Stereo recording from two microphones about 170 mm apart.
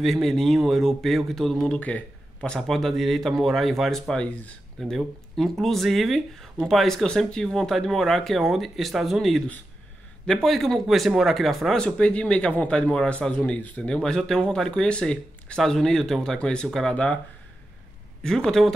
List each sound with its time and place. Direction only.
0.0 s speech: centre (ahead or behind)
18.2 s speech: 5° left (ahead or behind)